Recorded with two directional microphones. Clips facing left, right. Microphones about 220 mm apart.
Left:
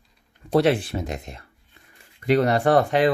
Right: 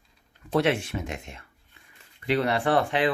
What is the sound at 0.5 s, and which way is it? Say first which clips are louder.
Speech: left 5 dB; 35° left (ahead or behind).